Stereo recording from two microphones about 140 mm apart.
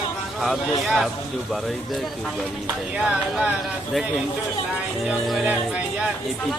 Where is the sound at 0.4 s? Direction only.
Centre (ahead or behind).